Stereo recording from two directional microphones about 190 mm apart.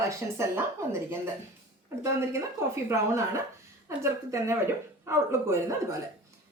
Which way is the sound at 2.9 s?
15° right (ahead or behind).